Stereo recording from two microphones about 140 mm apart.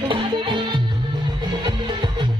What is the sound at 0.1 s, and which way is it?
Music, 35° right (ahead or behind).